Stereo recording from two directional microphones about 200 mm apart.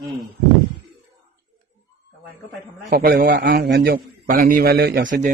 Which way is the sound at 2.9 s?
50° right (ahead or behind).